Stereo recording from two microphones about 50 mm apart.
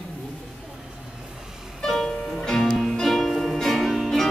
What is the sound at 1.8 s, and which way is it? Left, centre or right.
Music, centre.